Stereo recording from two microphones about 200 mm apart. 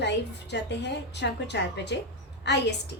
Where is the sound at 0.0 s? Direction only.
60° left (ahead or behind).